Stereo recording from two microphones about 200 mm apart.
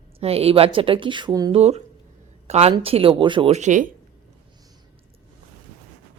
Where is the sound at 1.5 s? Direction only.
30° right (ahead or behind).